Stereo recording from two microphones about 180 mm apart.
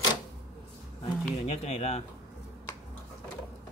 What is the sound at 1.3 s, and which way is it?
Speech, 35° left (ahead or behind).